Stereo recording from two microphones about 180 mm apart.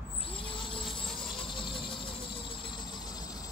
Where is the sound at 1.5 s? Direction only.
30° left (ahead or behind).